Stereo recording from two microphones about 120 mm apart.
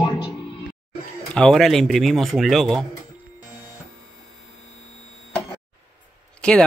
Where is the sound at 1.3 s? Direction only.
5° left (ahead or behind).